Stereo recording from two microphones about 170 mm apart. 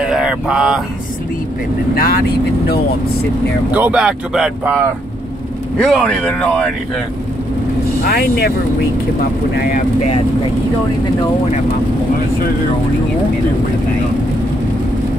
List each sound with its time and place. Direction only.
0.0 s a sound: 5° right (ahead or behind)
2.0 s speech: 65° left (ahead or behind)
3.7 s speech: 5° right (ahead or behind)
5.8 s speech: centre (ahead or behind)
8.0 s speech: 65° left (ahead or behind)